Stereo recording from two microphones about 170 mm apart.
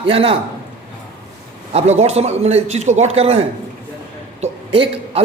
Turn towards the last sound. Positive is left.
turn(degrees=-35)  # may be behind; listen again after turning